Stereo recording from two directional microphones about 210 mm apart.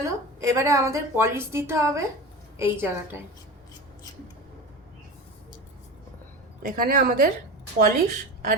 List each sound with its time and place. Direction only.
0.0 s a woman's voice: 15° right (ahead or behind)
6.6 s a woman's voice: 45° right (ahead or behind)